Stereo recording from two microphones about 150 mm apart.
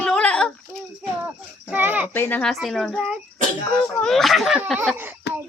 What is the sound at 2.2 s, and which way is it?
Speech, 10° left (ahead or behind).